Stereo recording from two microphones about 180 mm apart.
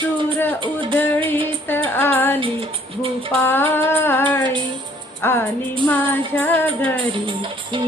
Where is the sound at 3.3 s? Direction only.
10° left (ahead or behind).